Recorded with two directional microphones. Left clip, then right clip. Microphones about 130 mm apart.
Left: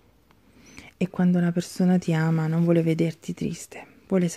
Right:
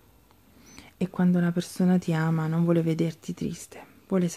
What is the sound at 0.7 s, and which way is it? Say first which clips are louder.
Speech: left 3 dB; 35° left (ahead or behind).